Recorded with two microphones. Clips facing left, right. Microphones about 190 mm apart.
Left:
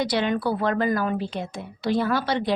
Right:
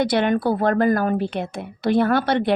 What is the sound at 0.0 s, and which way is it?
A woman's voice, 55° right (ahead or behind).